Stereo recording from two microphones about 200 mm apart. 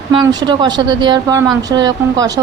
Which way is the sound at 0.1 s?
20° right (ahead or behind).